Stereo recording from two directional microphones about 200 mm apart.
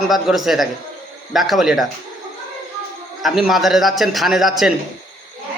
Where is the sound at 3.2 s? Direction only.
Centre (ahead or behind).